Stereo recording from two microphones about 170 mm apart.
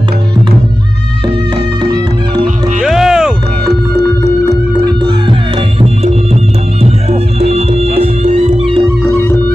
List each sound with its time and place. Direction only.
2.8 s music: centre (ahead or behind)
4.8 s music: 25° right (ahead or behind)
5.8 s music: 40° right (ahead or behind)